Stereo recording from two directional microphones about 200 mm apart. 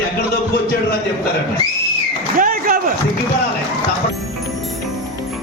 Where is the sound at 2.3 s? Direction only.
45° right (ahead or behind).